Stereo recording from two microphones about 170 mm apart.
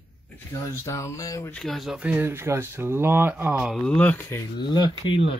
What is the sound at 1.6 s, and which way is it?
Speech, centre (ahead or behind).